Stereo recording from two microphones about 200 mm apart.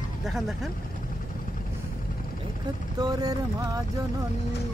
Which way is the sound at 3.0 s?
20° right (ahead or behind).